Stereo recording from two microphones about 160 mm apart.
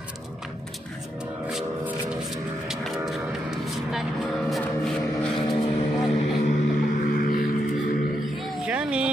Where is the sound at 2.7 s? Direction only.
Centre (ahead or behind).